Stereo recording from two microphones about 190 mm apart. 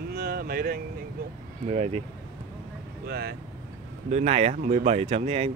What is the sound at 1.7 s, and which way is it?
Speech, 35° right (ahead or behind).